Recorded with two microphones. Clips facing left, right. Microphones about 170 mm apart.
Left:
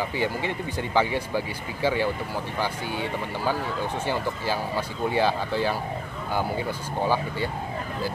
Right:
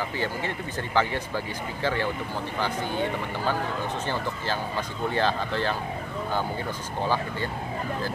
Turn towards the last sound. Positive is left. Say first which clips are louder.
# left 2 dB
turn(degrees=10)  # may be behind; listen again after turning